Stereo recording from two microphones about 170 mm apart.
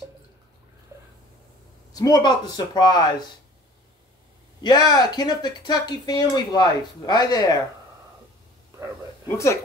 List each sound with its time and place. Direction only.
1.9 s speech: 20° left (ahead or behind)
4.6 s speech: 25° left (ahead or behind)
8.7 s a sound: 15° right (ahead or behind)